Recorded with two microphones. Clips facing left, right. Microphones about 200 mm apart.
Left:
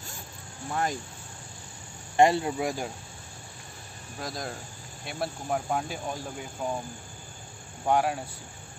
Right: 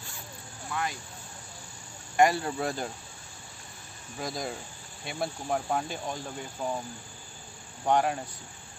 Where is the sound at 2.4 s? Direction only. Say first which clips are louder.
Left 2 dB; 10° left (ahead or behind).